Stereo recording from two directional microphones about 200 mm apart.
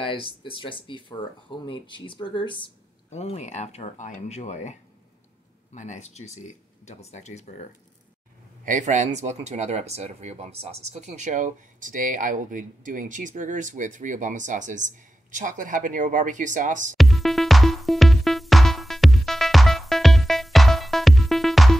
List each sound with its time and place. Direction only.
0.0 s speech: 25° left (ahead or behind)
5.8 s speech: 35° left (ahead or behind)
8.6 s speech: 40° right (ahead or behind)
16.9 s music: centre (ahead or behind)